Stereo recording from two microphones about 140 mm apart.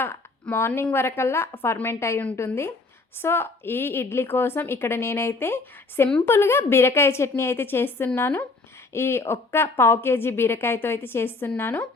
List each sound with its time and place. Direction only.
0.0 s a woman's voice: 15° left (ahead or behind)